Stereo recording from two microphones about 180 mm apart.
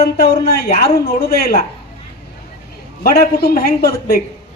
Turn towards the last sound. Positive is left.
turn(degrees=60)  # may be behind; listen again after turning